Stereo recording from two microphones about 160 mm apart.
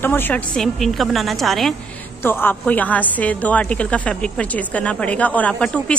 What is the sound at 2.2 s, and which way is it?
A woman's voice, 10° left (ahead or behind).